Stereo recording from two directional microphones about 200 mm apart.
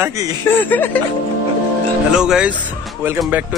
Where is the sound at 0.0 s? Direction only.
15° right (ahead or behind).